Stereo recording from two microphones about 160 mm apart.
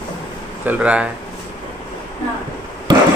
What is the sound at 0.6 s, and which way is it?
Speech, 10° right (ahead or behind).